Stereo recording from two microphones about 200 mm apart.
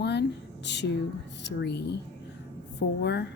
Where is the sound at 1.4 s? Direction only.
60° left (ahead or behind).